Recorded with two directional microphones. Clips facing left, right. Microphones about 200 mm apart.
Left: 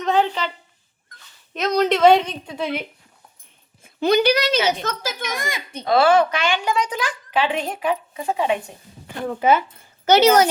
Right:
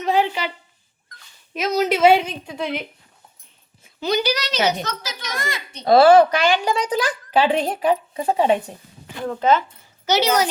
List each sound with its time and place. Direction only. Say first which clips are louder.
0.0 s a woman's voice: even; 10° right (ahead or behind)
1.5 s a woman's voice: left 1 dB; 5° right (ahead or behind)
3.8 s a woman's voice: left 5 dB; 55° left (ahead or behind)
5.3 s speech: left 1 dB; 15° left (ahead or behind)
5.8 s speech: right 4 dB; 35° right (ahead or behind)
9.2 s speech: even; 10° left (ahead or behind)
10.1 s a woman's voice: left 5 dB; 50° left (ahead or behind)